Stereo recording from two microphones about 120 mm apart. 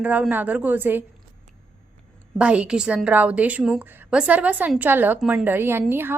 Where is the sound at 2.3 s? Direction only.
10° right (ahead or behind).